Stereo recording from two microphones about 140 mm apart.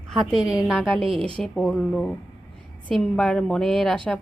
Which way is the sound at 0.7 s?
Centre (ahead or behind).